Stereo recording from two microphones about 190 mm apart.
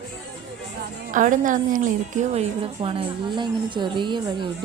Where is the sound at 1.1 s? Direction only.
45° right (ahead or behind).